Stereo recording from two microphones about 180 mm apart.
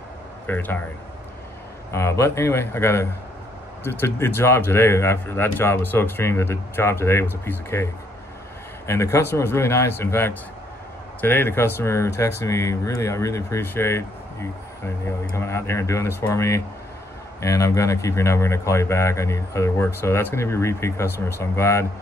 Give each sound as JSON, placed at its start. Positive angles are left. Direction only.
{"t": 0.5, "sound": "speech", "side_deg": 10}
{"t": 1.9, "sound": "speech", "side_deg": 15}